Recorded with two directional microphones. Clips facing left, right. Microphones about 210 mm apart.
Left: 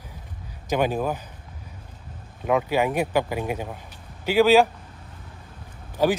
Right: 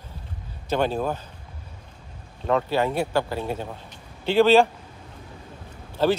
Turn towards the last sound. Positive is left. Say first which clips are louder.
# even
turn(degrees=10)  # may be behind; listen again after turning